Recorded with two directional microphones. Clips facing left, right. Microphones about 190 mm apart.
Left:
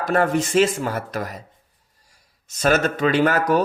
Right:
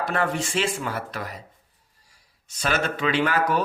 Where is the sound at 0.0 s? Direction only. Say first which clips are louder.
Left 6 dB; 45° left (ahead or behind).